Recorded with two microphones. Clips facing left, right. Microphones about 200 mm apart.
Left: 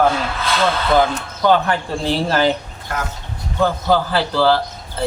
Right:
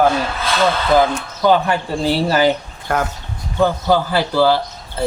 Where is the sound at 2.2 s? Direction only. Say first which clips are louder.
Right 2 dB; 5° right (ahead or behind).